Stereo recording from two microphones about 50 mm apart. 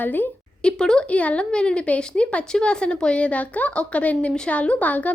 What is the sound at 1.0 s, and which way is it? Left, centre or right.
Speech, left.